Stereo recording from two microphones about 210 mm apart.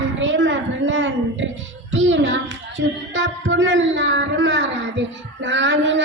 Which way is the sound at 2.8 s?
60° right (ahead or behind).